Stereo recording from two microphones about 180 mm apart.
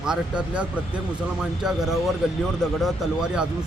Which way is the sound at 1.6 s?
Centre (ahead or behind).